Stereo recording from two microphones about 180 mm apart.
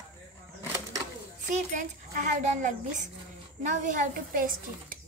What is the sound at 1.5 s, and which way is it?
A child's voice, 45° right (ahead or behind).